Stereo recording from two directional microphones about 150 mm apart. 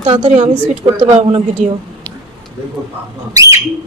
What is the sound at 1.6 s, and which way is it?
Speech, 55° right (ahead or behind).